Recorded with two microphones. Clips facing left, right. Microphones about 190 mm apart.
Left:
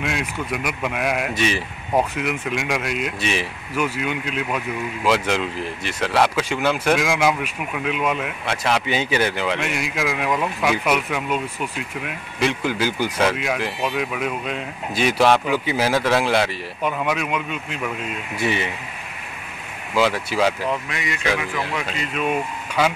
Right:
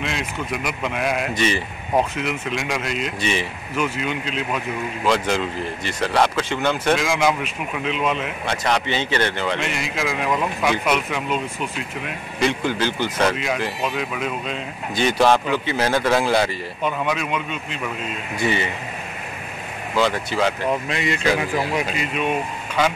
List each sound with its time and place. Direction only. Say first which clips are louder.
0.7 s speech: even; 5° left (ahead or behind)
12.4 s speech: even; 5° left (ahead or behind)
20.0 s speech: left 1 dB; 5° left (ahead or behind)
20.9 s speech: right 3 dB; 30° right (ahead or behind)